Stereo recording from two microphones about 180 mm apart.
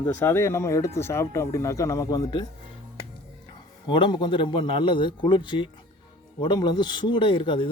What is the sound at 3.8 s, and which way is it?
Speech, 25° left (ahead or behind).